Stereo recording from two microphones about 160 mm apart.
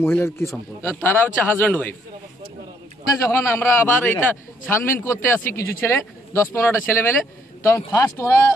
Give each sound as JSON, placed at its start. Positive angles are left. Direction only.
{"t": 0.0, "sound": "a man's voice", "side_deg": 15}
{"t": 3.2, "sound": "a man's voice", "side_deg": 15}